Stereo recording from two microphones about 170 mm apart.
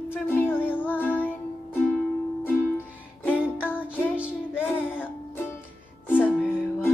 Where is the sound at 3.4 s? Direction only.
10° right (ahead or behind).